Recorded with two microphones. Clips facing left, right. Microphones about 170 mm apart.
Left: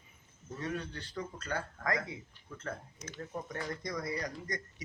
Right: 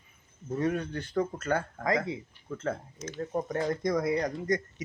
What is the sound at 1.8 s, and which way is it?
Speech, 25° right (ahead or behind).